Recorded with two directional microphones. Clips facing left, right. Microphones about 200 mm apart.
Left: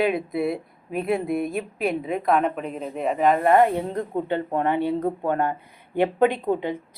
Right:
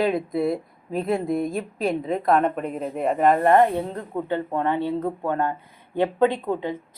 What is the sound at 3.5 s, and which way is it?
Speech, 15° left (ahead or behind).